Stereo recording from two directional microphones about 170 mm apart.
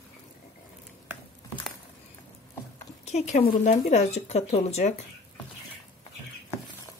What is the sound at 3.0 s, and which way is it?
Speech, 40° left (ahead or behind).